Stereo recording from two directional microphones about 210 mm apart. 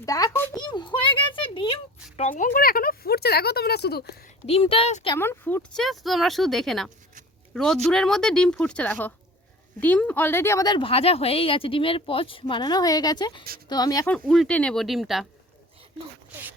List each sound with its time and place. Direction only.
0.0 s a child's voice: 15° left (ahead or behind); by 4.1 s 50° left (ahead or behind)
4.4 s speech: 25° left (ahead or behind)
5.1 s speech: 10° left (ahead or behind)
14.1 s speech: 5° left (ahead or behind)